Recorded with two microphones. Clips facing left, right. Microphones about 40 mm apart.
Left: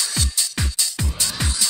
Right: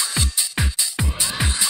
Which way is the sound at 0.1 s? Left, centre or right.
Right.